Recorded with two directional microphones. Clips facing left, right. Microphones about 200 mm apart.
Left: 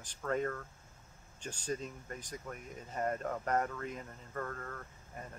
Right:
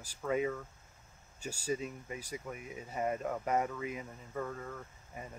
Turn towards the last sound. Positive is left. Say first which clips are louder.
# right 1 dB
turn(degrees=-5)  # may be behind; listen again after turning